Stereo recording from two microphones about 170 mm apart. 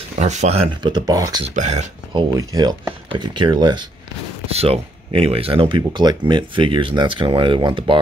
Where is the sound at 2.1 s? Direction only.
20° right (ahead or behind).